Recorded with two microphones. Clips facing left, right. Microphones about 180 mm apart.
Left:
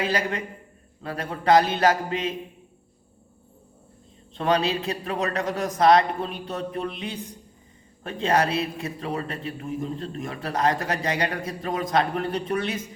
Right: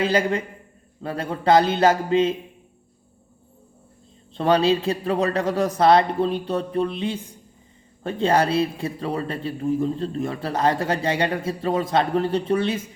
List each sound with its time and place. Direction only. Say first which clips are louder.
0.0 s speech: right 5 dB; 25° right (ahead or behind)
4.4 s a man's voice: right 5 dB; 30° right (ahead or behind)